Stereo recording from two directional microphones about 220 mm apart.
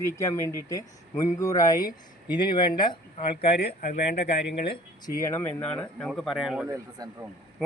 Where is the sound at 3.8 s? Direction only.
40° left (ahead or behind).